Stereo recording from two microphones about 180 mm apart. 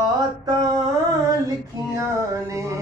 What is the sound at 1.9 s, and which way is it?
Music, 15° right (ahead or behind).